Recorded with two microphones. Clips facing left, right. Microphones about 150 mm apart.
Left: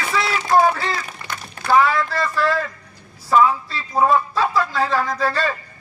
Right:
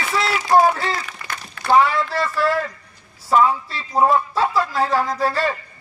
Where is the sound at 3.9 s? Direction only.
20° right (ahead or behind).